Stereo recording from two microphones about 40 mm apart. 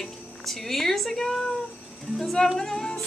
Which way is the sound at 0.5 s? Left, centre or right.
Centre.